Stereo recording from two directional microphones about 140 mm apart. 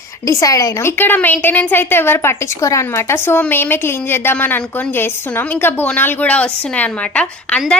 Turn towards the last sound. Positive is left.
turn(degrees=5)  # may be behind; listen again after turning